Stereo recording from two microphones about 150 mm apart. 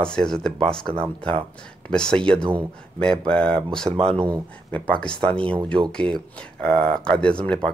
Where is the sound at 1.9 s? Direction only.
5° left (ahead or behind).